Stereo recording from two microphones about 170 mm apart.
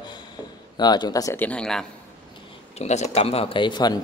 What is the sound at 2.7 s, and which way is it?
Speech, 40° left (ahead or behind).